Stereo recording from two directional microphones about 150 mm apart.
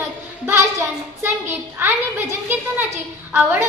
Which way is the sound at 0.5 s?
15° right (ahead or behind).